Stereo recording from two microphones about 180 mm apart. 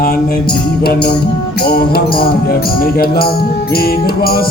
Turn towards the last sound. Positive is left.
turn(degrees=55)  # may be behind; listen again after turning